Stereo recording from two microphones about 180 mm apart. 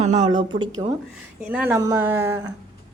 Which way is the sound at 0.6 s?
25° right (ahead or behind).